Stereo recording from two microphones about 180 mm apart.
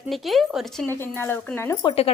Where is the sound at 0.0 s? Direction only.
Centre (ahead or behind).